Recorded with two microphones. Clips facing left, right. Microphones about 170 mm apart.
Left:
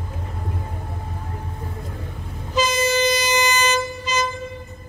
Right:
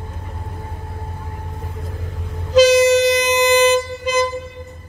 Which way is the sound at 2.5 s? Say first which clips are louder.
Right 10 dB; 90° right.